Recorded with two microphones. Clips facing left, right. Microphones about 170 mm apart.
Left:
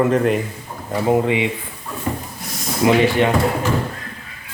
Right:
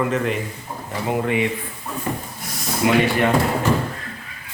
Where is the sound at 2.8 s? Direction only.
25° left (ahead or behind).